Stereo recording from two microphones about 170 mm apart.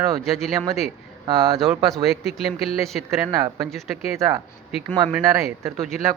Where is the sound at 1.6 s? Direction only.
Centre (ahead or behind).